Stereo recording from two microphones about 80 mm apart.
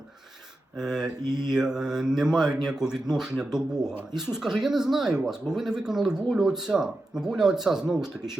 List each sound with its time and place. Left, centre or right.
0.8 s speech: centre
1.2 s mantra: right
1.5 s speech: centre